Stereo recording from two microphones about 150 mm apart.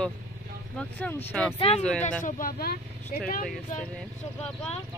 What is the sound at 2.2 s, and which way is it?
Speech, 65° left (ahead or behind).